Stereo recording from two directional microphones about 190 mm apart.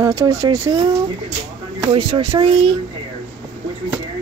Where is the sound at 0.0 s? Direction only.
20° right (ahead or behind).